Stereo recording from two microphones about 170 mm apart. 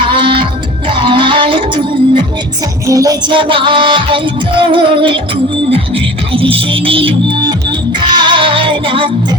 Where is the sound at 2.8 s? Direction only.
20° right (ahead or behind).